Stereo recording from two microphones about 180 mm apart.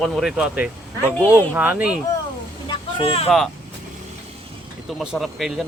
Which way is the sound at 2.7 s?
30° left (ahead or behind).